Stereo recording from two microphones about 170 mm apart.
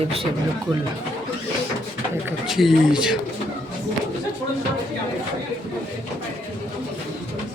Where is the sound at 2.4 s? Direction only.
Centre (ahead or behind).